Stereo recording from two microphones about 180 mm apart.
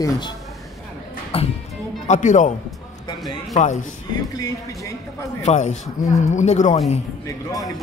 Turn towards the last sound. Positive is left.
turn(degrees=20)  # may be behind; listen again after turning